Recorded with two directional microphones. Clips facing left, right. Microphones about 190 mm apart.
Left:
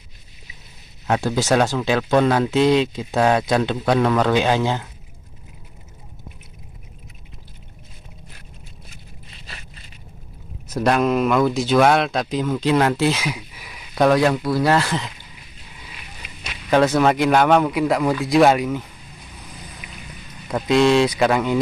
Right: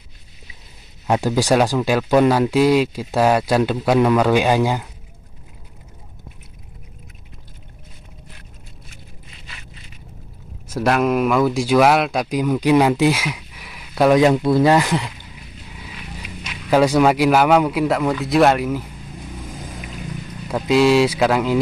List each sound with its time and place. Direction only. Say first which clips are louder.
1.0 s speech: right 2 dB; 10° right (ahead or behind)
10.7 s speech: even; 5° right (ahead or behind)
13.3 s a sound: left 1 dB; centre (ahead or behind)
14.1 s speech: right 4 dB; 20° right (ahead or behind)
16.7 s a man's voice: right 2 dB; 10° right (ahead or behind)
20.4 s a man's voice: right 1 dB; 5° right (ahead or behind)